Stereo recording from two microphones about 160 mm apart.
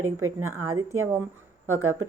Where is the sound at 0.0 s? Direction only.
15° right (ahead or behind).